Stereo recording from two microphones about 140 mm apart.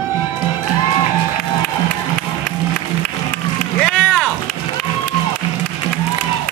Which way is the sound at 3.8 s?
10° left (ahead or behind).